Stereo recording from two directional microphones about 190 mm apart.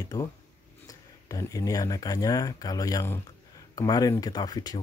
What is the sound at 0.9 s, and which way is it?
Speech, 15° left (ahead or behind).